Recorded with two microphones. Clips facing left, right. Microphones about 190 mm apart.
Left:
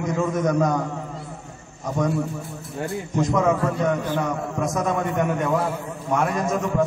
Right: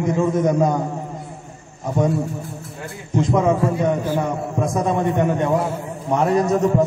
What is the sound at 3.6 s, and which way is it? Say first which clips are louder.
Speech: right 3 dB; 10° right (ahead or behind).